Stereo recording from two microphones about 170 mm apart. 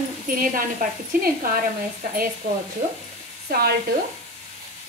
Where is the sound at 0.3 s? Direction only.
55° right (ahead or behind).